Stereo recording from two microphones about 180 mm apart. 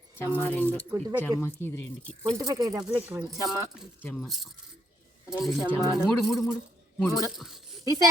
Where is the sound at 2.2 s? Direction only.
20° right (ahead or behind).